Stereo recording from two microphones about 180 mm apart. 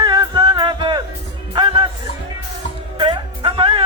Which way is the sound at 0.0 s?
25° right (ahead or behind).